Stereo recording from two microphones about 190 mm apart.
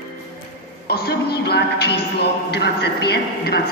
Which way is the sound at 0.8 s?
55° left (ahead or behind).